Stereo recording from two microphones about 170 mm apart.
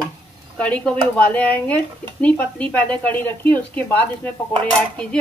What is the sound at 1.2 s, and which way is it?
Speech, 10° left (ahead or behind).